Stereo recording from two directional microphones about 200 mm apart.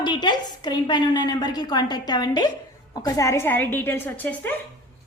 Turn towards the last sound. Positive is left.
turn(degrees=10)  # may be behind; listen again after turning